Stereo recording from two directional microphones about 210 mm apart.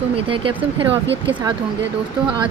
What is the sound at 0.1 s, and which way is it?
Speech, 25° right (ahead or behind).